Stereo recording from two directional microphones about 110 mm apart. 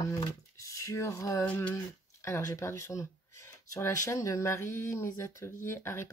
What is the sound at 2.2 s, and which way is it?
Speech, 25° left (ahead or behind).